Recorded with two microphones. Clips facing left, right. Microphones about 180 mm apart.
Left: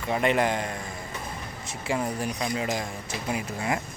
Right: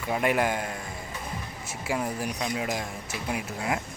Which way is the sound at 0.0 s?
5° right (ahead or behind).